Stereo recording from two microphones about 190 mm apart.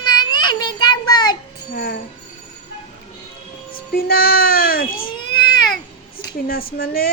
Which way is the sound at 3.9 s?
50° left (ahead or behind).